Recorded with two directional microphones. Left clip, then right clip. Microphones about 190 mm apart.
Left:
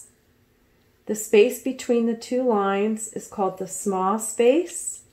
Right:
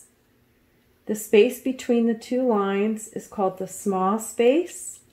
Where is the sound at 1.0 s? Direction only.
35° right (ahead or behind).